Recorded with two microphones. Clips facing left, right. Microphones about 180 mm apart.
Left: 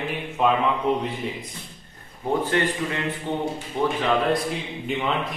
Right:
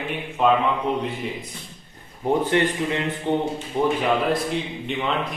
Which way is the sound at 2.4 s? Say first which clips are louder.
Right 3 dB; 20° right (ahead or behind).